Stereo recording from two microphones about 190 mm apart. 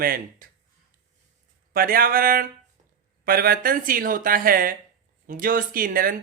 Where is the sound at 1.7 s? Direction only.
50° right (ahead or behind).